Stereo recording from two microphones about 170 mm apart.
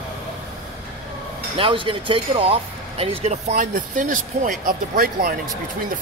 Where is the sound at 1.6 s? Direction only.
30° right (ahead or behind).